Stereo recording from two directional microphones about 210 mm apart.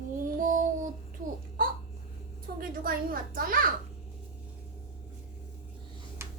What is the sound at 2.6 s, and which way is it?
A woman's voice, 45° right (ahead or behind).